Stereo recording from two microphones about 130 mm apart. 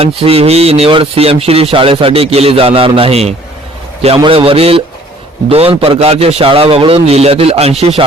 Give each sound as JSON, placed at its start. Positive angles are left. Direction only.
{"t": 0.0, "sound": "speech", "side_deg": -50}